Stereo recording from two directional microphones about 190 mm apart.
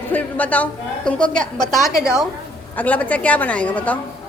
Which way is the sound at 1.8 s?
15° left (ahead or behind).